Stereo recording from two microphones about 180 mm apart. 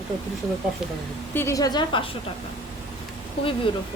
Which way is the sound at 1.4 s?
15° left (ahead or behind).